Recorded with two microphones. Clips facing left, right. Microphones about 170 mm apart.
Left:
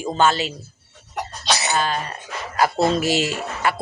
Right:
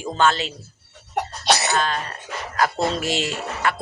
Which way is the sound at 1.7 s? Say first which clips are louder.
Left 1 dB; 5° left (ahead or behind).